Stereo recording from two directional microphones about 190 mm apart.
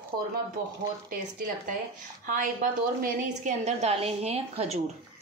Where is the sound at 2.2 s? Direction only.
45° right (ahead or behind).